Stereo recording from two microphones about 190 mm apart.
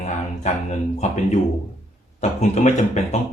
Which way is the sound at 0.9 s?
35° left (ahead or behind).